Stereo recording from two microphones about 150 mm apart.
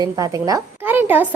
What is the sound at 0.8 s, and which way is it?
Speech, 10° right (ahead or behind).